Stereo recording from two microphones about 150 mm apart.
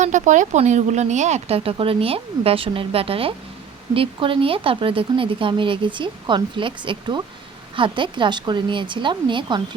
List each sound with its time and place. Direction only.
0.0 s speech: 55° right (ahead or behind); by 9.6 s 30° right (ahead or behind)